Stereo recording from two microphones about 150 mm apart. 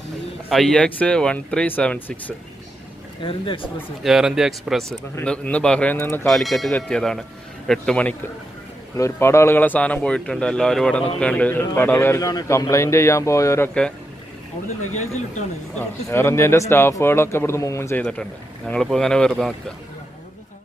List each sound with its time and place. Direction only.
0.5 s speech: centre (ahead or behind)
3.2 s speech: 35° left (ahead or behind)
4.0 s speech: 5° right (ahead or behind); by 6.2 s 15° left (ahead or behind)
6.2 s speech: centre (ahead or behind)
8.9 s a man's voice: 20° left (ahead or behind)
15.0 s speech: 50° left (ahead or behind)
15.7 s speech: 15° left (ahead or behind)
18.7 s speech: 5° left (ahead or behind)